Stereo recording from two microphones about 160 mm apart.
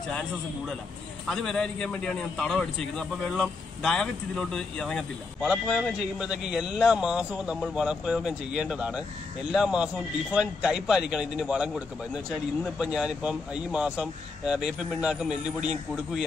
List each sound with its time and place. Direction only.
1.2 s a man's voice: 5° left (ahead or behind)